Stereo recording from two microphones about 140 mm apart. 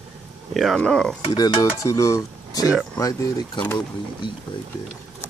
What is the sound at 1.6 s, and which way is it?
Cutlery, 20° left (ahead or behind).